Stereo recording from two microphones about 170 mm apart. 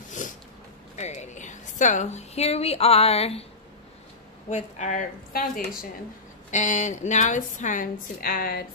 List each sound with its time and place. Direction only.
0.9 s a woman's voice: 40° left (ahead or behind)
4.5 s a woman's voice: 45° left (ahead or behind)
6.5 s a woman's voice: 45° left (ahead or behind)